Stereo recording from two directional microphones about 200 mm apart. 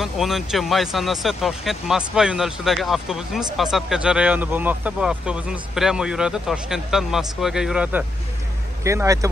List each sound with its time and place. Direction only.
0.0 s speech: centre (ahead or behind)
8.8 s a man's voice: 15° right (ahead or behind)